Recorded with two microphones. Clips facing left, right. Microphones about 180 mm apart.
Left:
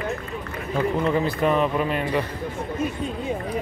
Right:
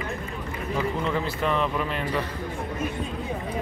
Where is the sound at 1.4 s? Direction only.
15° left (ahead or behind).